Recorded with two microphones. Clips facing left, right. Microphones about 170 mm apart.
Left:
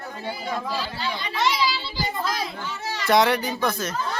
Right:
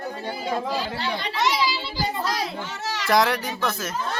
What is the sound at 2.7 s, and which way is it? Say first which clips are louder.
Baby cry: right 1 dB; 80° right.